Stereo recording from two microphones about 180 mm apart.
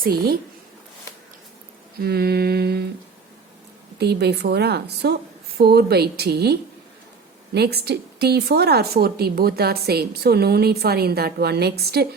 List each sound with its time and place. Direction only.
0.0 s a woman's voice: 60° right (ahead or behind)
2.0 s a woman's voice: 60° right (ahead or behind)
3.9 s a woman's voice: 65° right (ahead or behind)